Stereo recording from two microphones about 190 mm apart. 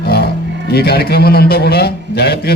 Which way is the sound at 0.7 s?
55° left (ahead or behind).